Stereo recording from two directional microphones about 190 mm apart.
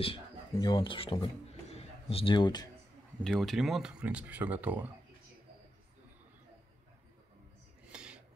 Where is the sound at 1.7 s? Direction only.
30° left (ahead or behind).